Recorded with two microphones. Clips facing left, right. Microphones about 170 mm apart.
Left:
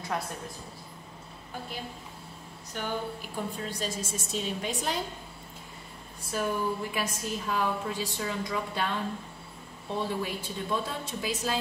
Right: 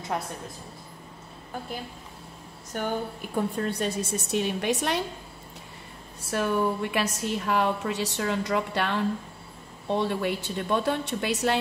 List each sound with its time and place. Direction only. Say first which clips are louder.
2.7 s a woman's voice: right 4 dB; 55° right (ahead or behind); by 5.0 s 75° right (ahead or behind)
6.3 s a woman's voice: right 4 dB; 70° right (ahead or behind)